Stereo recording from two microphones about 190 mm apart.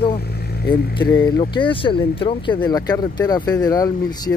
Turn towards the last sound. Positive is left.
turn(degrees=20)  # may be behind; listen again after turning